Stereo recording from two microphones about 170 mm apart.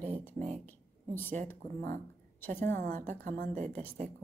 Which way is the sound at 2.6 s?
45° right (ahead or behind).